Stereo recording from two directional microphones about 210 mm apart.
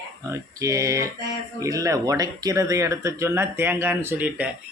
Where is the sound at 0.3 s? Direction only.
15° right (ahead or behind).